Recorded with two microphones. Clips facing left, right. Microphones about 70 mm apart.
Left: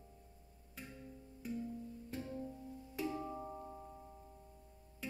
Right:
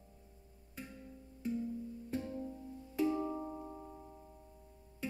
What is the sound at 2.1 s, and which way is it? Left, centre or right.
Music, centre.